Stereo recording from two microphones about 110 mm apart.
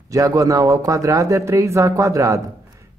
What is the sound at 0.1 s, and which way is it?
Speech, 30° right (ahead or behind).